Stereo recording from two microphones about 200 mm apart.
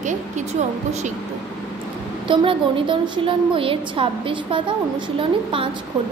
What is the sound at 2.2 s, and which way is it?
A woman's voice, 25° right (ahead or behind).